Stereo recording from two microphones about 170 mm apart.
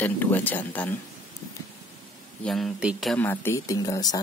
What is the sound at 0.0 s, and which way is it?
Speech, 10° left (ahead or behind).